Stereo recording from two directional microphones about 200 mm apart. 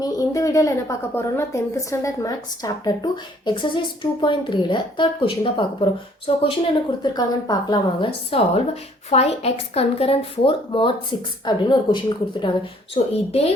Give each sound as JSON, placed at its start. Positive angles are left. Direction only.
{"t": 0.0, "sound": "a woman's voice", "side_deg": 15}